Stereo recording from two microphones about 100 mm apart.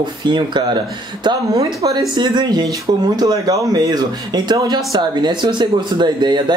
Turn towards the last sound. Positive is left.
turn(degrees=-50)  # may be behind; listen again after turning